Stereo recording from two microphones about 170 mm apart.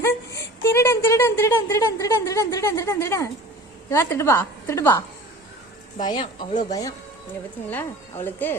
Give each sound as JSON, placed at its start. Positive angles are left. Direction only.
{"t": 0.0, "sound": "a woman's voice", "side_deg": 15}
{"t": 6.0, "sound": "a woman's voice", "side_deg": 25}
{"t": 6.5, "sound": "speech", "side_deg": 45}
{"t": 8.2, "sound": "a woman's voice", "side_deg": 10}